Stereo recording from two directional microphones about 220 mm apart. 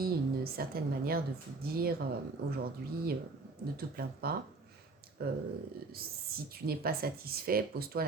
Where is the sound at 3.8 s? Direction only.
45° right (ahead or behind).